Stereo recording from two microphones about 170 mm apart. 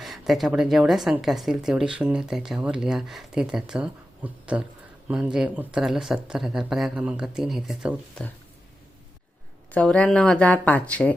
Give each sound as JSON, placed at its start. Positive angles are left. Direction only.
{"t": 0.0, "sound": "a woman's voice", "side_deg": 0}
{"t": 9.7, "sound": "speech", "side_deg": 5}